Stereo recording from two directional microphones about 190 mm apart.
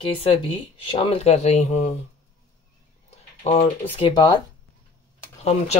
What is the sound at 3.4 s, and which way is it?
Speech, 30° left (ahead or behind).